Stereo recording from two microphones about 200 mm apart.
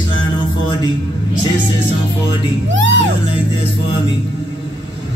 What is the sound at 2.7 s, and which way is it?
Music, 70° right (ahead or behind).